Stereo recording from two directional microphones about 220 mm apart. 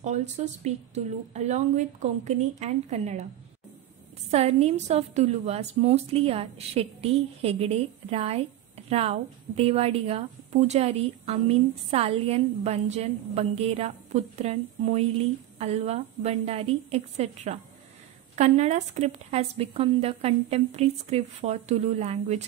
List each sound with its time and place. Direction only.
0.0 s a woman's voice: 30° right (ahead or behind)
4.3 s a woman's voice: 30° right (ahead or behind)